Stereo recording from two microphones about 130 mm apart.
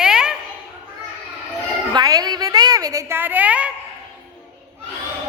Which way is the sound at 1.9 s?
30° right (ahead or behind).